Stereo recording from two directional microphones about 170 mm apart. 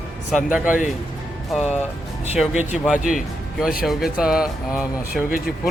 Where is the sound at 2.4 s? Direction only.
5° right (ahead or behind).